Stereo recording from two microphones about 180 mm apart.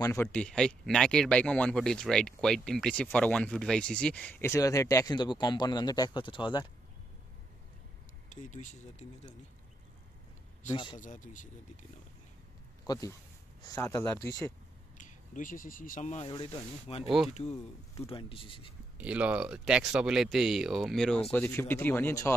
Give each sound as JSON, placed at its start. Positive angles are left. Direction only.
{"t": 0.0, "sound": "speech", "side_deg": 15}
{"t": 8.3, "sound": "speech", "side_deg": 40}
{"t": 10.7, "sound": "speech", "side_deg": 25}
{"t": 11.0, "sound": "speech", "side_deg": 45}
{"t": 12.8, "sound": "speech", "side_deg": 20}
{"t": 15.0, "sound": "speech", "side_deg": 45}
{"t": 16.3, "sound": "speech", "side_deg": 30}
{"t": 18.9, "sound": "speech", "side_deg": -10}